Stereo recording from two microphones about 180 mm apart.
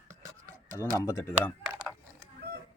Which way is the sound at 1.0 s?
15° left (ahead or behind).